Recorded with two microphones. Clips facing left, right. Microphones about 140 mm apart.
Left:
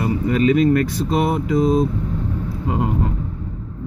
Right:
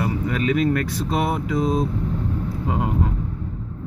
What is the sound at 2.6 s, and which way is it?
Vehicle, centre (ahead or behind).